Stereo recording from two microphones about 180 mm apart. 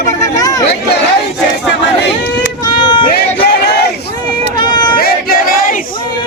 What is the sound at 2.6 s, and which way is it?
Run, 25° left (ahead or behind).